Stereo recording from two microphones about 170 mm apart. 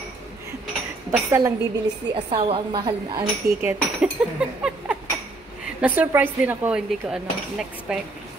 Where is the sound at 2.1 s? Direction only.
30° right (ahead or behind).